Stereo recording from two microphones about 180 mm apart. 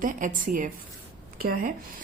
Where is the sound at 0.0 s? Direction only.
45° right (ahead or behind).